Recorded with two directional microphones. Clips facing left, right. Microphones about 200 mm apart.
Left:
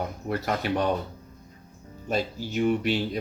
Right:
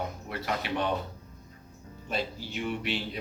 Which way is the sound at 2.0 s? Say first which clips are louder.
Left 5 dB; 45° left (ahead or behind).